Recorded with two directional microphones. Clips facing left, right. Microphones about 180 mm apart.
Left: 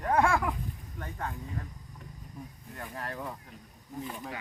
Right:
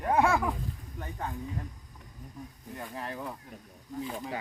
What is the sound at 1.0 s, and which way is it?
Speech, 15° right (ahead or behind).